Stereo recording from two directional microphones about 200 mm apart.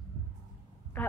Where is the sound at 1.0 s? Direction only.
10° left (ahead or behind).